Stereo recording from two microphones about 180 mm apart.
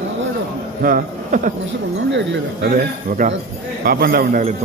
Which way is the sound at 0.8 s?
50° right (ahead or behind).